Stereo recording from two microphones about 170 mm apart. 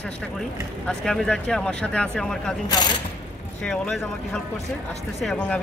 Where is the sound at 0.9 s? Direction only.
5° left (ahead or behind).